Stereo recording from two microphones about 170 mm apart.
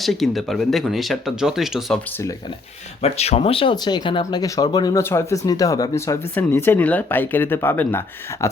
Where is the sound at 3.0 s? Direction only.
35° left (ahead or behind).